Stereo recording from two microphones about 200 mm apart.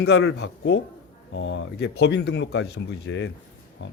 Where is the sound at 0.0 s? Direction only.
60° left (ahead or behind).